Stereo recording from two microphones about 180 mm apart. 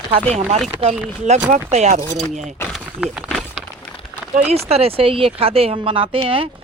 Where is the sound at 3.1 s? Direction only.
Centre (ahead or behind).